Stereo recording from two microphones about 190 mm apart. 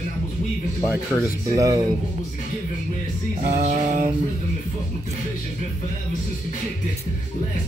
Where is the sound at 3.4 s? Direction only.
35° right (ahead or behind).